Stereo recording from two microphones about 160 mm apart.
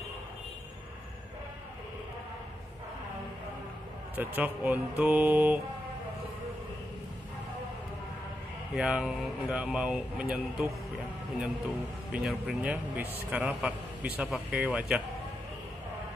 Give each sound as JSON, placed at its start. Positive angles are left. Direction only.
{"t": 4.1, "sound": "a man's voice", "side_deg": -10}
{"t": 8.7, "sound": "speech", "side_deg": -5}
{"t": 12.1, "sound": "a man's voice", "side_deg": -5}